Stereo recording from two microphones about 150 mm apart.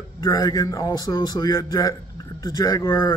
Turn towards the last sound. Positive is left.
turn(degrees=25)  # may be behind; listen again after turning